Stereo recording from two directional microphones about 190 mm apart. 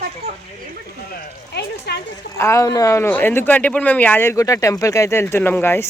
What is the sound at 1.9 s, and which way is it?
Speech, 65° left (ahead or behind).